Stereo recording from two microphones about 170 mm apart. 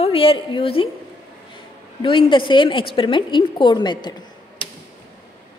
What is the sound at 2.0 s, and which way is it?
A woman's voice, 30° left (ahead or behind).